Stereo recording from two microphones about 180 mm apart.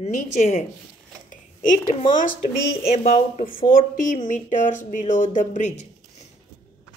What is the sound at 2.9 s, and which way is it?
Speech, 40° left (ahead or behind).